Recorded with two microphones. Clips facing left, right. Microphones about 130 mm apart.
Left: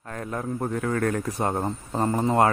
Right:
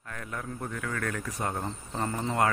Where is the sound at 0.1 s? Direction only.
35° left (ahead or behind).